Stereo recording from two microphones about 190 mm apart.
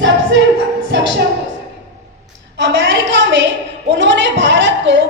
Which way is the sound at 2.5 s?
75° right (ahead or behind).